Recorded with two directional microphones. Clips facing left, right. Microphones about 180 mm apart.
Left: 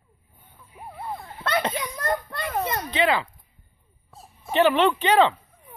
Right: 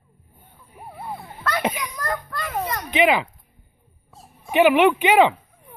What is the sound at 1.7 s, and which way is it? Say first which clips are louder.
Speech: left 2 dB; 25° left (ahead or behind).